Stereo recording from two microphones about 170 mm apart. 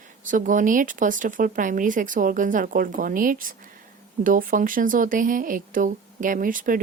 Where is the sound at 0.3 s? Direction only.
50° right (ahead or behind).